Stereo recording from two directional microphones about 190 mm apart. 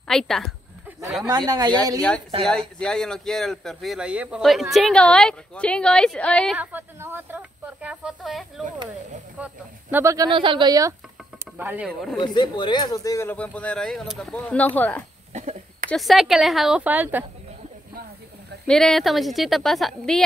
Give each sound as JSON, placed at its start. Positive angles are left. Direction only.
{"t": 0.1, "sound": "speech", "side_deg": 0}
{"t": 1.2, "sound": "speech", "side_deg": -20}
{"t": 2.8, "sound": "speech", "side_deg": 5}
{"t": 12.2, "sound": "speech", "side_deg": 25}
{"t": 15.3, "sound": "a sound", "side_deg": -40}
{"t": 15.9, "sound": "speech", "side_deg": 0}
{"t": 18.7, "sound": "speech", "side_deg": 5}